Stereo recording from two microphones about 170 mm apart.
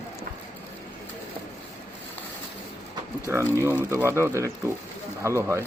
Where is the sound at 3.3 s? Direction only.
10° right (ahead or behind).